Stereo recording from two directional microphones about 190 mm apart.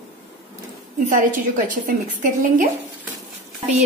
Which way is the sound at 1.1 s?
45° right (ahead or behind).